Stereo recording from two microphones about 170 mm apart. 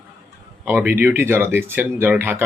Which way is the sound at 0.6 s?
10° right (ahead or behind).